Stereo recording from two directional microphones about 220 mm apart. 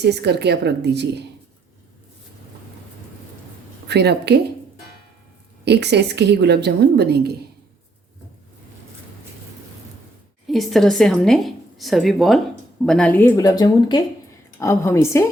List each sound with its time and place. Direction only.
0.0 s a woman's voice: 50° right (ahead or behind)
3.8 s a woman's voice: 50° right (ahead or behind)
5.6 s a woman's voice: 50° right (ahead or behind)
10.4 s a woman's voice: centre (ahead or behind)